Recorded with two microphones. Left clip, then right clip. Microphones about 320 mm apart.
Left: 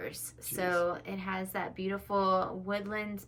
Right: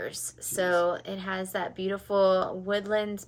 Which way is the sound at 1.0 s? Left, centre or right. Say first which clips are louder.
Right 4 dB; centre.